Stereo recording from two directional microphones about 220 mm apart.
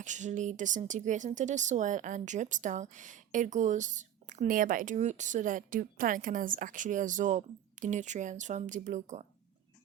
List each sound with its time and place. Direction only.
0.0 s speech: 35° right (ahead or behind)